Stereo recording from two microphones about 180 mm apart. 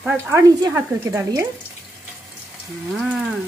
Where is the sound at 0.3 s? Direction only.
20° right (ahead or behind).